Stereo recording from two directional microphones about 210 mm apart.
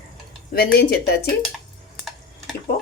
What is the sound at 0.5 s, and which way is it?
Speech, 50° left (ahead or behind).